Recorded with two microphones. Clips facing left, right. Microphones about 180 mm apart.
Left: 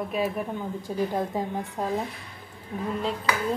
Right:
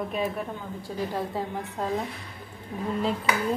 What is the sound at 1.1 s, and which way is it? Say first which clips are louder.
Speech: left 2 dB; 15° left (ahead or behind).